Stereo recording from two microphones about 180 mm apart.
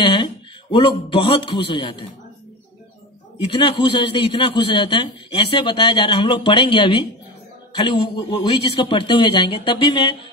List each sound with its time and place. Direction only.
0.0 s a man's voice: 25° left (ahead or behind)
3.3 s a man's voice: 25° left (ahead or behind)